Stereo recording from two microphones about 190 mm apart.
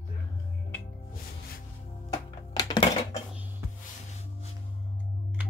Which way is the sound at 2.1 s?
20° left (ahead or behind).